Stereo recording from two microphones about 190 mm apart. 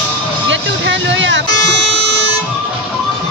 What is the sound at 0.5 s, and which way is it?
Music, 75° right (ahead or behind).